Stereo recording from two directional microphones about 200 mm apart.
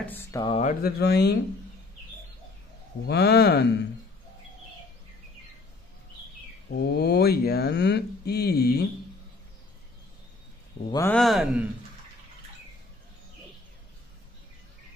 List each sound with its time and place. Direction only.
0.0 s a sound: 10° left (ahead or behind)
0.4 s speech: 25° left (ahead or behind)
0.7 s speech: 50° left (ahead or behind)
3.1 s speech: 55° left (ahead or behind)
6.7 s speech: 55° left (ahead or behind)
10.9 s speech: 15° left (ahead or behind)
11.1 s speech: centre (ahead or behind)